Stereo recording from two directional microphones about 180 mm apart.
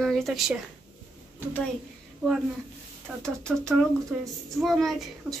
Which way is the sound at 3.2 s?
5° left (ahead or behind).